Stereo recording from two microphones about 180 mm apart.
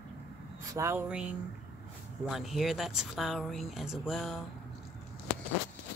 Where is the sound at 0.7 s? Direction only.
15° right (ahead or behind).